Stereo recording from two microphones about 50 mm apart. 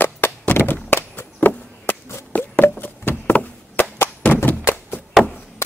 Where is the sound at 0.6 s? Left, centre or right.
Left.